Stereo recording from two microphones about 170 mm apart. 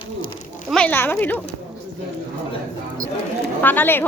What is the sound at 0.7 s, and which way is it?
Speech, 10° left (ahead or behind).